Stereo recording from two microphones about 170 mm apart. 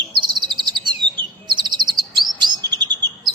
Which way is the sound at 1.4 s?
25° right (ahead or behind).